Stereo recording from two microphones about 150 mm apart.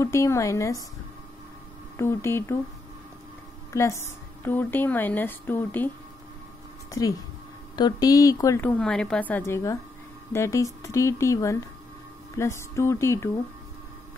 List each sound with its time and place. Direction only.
0.0 s speech: 20° left (ahead or behind)
2.0 s a woman's voice: 15° left (ahead or behind)
3.7 s a woman's voice: 20° left (ahead or behind)
6.9 s a woman's voice: 20° left (ahead or behind)
8.6 s a woman's voice: 5° left (ahead or behind)